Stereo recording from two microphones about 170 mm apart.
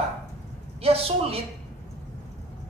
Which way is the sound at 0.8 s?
35° right (ahead or behind).